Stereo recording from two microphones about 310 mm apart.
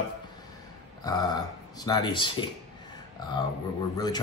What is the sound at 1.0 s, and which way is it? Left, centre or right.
Speech, centre.